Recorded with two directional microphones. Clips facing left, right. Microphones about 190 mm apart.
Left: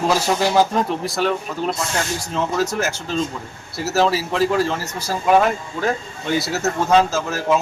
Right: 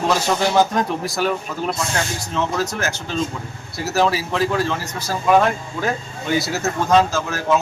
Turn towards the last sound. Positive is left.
turn(degrees=5)  # may be behind; listen again after turning